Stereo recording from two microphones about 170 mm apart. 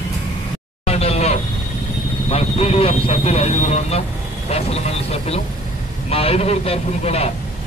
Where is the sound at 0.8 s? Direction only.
35° left (ahead or behind).